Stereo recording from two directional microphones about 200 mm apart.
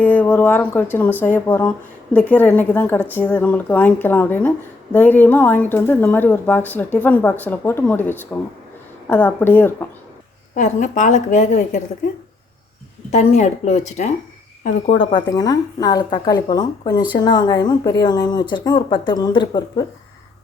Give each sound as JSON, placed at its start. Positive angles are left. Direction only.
{"t": 0.0, "sound": "a woman's voice", "side_deg": 10}
{"t": 10.5, "sound": "a woman's voice", "side_deg": 35}
{"t": 13.1, "sound": "a woman's voice", "side_deg": 35}
{"t": 14.9, "sound": "speech", "side_deg": 20}